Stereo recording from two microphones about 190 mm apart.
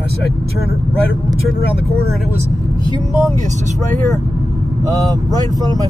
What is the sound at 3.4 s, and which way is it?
Speech, 40° right (ahead or behind).